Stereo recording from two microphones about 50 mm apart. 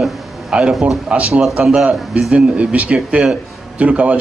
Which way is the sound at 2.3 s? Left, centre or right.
Right.